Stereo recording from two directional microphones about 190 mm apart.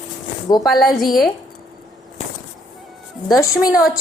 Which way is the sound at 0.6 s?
Centre (ahead or behind).